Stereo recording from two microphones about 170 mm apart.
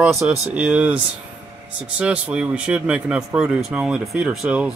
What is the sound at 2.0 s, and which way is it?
Speech, 5° right (ahead or behind).